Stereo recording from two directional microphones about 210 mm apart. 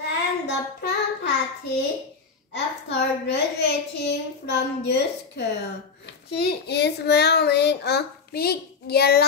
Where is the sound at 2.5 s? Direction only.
55° left (ahead or behind).